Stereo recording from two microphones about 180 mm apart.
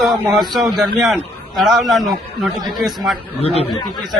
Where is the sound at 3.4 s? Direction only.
35° left (ahead or behind).